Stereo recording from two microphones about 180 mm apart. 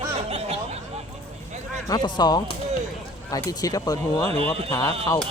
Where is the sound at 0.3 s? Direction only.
35° right (ahead or behind).